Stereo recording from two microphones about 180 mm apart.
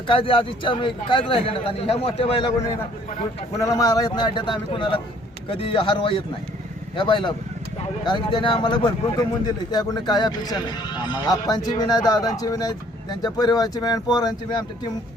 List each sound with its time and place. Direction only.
0.1 s speech: 30° left (ahead or behind)
3.6 s speech: 20° left (ahead or behind)